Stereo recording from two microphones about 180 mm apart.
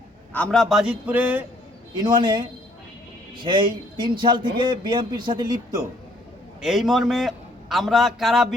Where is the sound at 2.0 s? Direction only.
25° right (ahead or behind).